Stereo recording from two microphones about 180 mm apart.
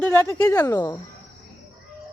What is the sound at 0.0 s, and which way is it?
Speech, 10° left (ahead or behind).